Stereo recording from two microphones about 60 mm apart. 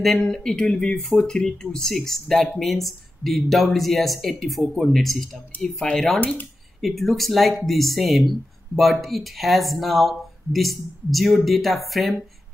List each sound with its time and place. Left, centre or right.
0.0 s speech: centre
6.1 s speech: left
6.8 s speech: centre